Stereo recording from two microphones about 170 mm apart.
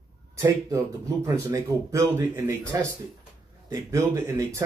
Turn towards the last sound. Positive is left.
turn(degrees=-15)  # may be behind; listen again after turning